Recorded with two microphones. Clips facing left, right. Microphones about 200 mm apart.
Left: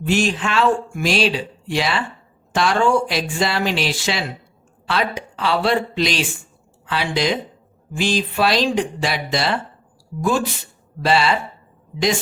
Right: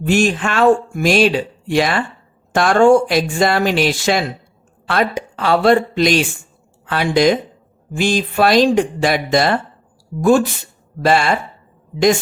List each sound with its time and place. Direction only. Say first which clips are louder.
0.0 s speech: right 4 dB; 50° right (ahead or behind)